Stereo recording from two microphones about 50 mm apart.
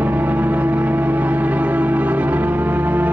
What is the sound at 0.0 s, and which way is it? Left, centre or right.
Music, right.